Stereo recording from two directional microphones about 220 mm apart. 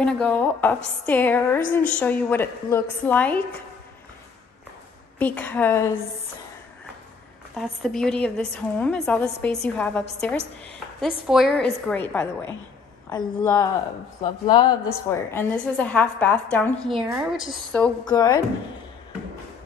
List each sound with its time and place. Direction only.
0.0 s a woman's voice: 5° left (ahead or behind)
5.2 s a woman's voice: 5° left (ahead or behind)
7.5 s a woman's voice: centre (ahead or behind); by 14.8 s 20° left (ahead or behind)
15.0 s a woman's voice: 5° left (ahead or behind)
18.0 s a woman's voice: 15° left (ahead or behind)